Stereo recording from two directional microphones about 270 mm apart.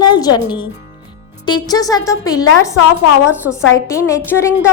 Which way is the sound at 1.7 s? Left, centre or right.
Centre.